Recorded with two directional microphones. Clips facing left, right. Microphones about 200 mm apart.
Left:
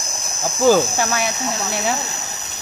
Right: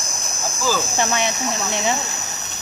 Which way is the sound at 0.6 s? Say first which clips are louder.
Left 9 dB; 60° left (ahead or behind).